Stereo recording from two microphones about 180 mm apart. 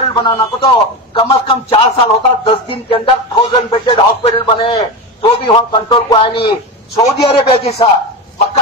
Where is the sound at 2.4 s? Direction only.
30° left (ahead or behind).